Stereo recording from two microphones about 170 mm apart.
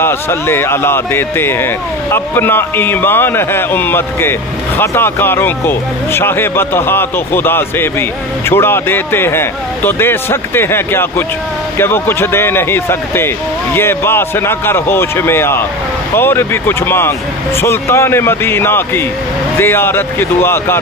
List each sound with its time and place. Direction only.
0.0 s a man's voice: 15° left (ahead or behind)